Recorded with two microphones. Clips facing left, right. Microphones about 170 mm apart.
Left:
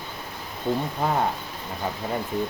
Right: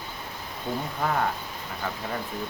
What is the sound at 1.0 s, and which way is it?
Speech, 20° left (ahead or behind).